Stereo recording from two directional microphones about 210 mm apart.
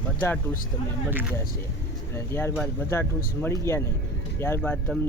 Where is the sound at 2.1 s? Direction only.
10° left (ahead or behind).